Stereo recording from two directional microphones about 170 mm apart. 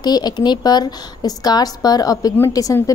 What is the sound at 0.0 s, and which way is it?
A woman's voice, 25° left (ahead or behind).